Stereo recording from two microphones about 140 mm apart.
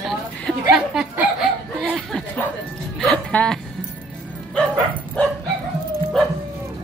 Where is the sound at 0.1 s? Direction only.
Centre (ahead or behind).